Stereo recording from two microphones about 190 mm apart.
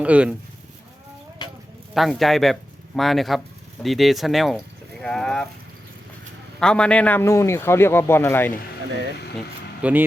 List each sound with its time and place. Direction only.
0.0 s speech: 5° right (ahead or behind)
1.4 s clip-clop: 20° left (ahead or behind)
2.0 s speech: centre (ahead or behind)
6.6 s speech: 5° left (ahead or behind)
9.8 s speech: 5° right (ahead or behind)